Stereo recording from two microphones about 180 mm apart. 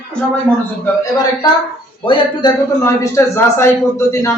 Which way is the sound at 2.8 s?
15° left (ahead or behind).